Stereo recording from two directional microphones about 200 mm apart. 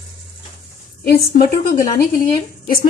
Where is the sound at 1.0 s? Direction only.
50° left (ahead or behind).